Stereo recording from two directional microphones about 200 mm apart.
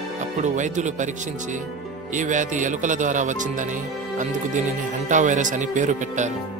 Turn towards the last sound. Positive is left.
turn(degrees=-40)  # may be behind; listen again after turning